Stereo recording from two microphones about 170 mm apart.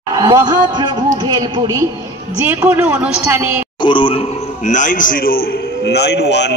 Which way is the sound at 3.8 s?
30° left (ahead or behind).